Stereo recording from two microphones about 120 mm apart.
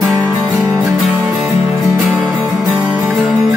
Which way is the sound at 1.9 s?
Centre (ahead or behind).